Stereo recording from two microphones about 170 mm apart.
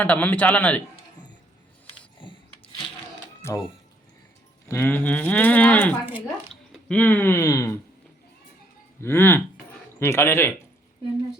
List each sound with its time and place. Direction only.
0.0 s cattle: 10° left (ahead or behind)
3.4 s cattle: 15° left (ahead or behind)
4.7 s cattle: 10° left (ahead or behind)
6.5 s speech: 5° left (ahead or behind)
9.0 s speech: 15° left (ahead or behind)
10.0 s cattle: 15° left (ahead or behind)